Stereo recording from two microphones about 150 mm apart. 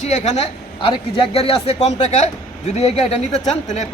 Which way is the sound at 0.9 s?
35° left (ahead or behind).